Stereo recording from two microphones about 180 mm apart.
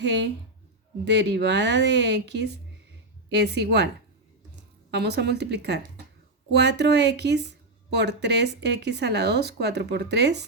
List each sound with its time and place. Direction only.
0.0 s speech: 75° right (ahead or behind)
4.9 s speech: 65° right (ahead or behind)